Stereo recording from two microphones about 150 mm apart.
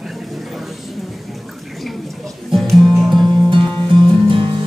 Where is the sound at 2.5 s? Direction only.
Centre (ahead or behind).